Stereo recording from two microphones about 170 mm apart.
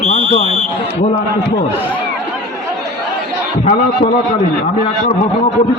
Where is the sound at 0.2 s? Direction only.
35° right (ahead or behind).